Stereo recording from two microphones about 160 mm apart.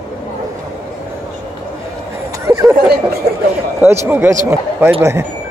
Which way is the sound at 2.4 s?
20° right (ahead or behind).